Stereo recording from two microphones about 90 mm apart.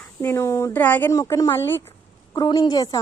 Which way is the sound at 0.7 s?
20° left (ahead or behind).